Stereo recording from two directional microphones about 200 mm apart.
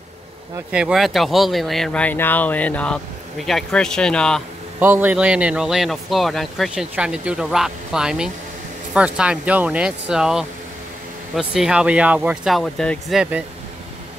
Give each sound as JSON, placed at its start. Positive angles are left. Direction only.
{"t": 0.7, "sound": "speech", "side_deg": -5}
{"t": 4.7, "sound": "speech", "side_deg": -10}